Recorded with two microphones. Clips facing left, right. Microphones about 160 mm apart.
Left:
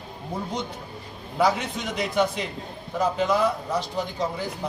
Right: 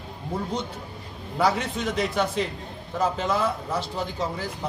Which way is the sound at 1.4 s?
Centre (ahead or behind).